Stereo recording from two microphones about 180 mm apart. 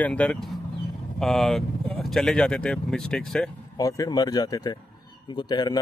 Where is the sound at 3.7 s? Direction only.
20° left (ahead or behind).